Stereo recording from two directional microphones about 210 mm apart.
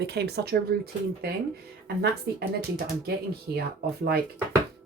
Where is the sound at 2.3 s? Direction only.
50° right (ahead or behind).